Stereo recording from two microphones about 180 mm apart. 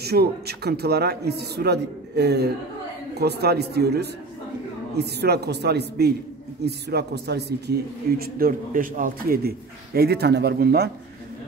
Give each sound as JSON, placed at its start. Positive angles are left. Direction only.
{"t": 0.0, "sound": "a man's voice", "side_deg": -65}